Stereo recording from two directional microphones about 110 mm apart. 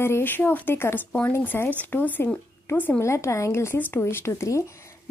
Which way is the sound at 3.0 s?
25° left (ahead or behind).